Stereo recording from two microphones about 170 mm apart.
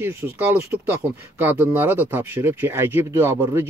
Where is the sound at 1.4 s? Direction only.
10° right (ahead or behind).